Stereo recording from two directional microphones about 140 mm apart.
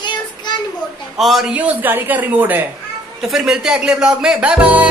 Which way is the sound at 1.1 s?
Centre (ahead or behind).